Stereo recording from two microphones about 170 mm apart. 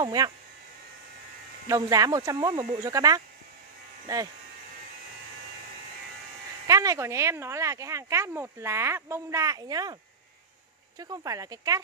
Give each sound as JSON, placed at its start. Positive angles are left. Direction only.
{"t": 0.0, "sound": "speech", "side_deg": -25}
{"t": 1.7, "sound": "speech", "side_deg": -20}
{"t": 6.7, "sound": "speech", "side_deg": -20}
{"t": 11.0, "sound": "speech", "side_deg": -20}